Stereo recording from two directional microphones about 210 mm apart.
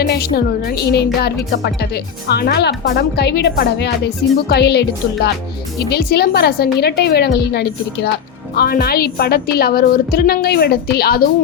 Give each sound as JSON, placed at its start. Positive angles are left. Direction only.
{"t": 0.0, "sound": "music", "side_deg": 50}
{"t": 0.3, "sound": "a woman's voice", "side_deg": 45}